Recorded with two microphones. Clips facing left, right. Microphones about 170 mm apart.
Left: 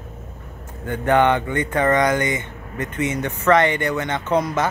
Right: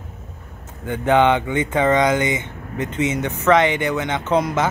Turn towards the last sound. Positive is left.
turn(degrees=-20)  # may be behind; listen again after turning